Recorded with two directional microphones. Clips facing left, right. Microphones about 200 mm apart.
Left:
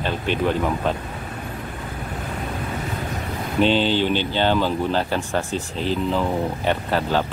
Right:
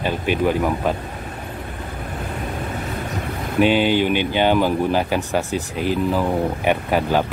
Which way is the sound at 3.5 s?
10° right (ahead or behind).